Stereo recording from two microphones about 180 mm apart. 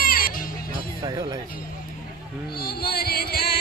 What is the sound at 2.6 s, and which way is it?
Music, 55° left (ahead or behind).